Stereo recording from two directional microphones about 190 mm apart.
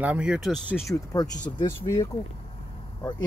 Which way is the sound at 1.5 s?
20° left (ahead or behind).